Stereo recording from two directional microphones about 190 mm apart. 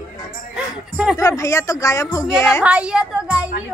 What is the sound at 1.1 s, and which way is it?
Speech, 15° left (ahead or behind).